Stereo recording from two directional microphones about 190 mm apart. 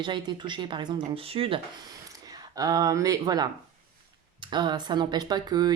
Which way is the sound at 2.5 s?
20° right (ahead or behind).